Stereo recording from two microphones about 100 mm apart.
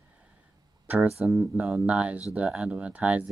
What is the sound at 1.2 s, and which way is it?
Speech, 5° right (ahead or behind).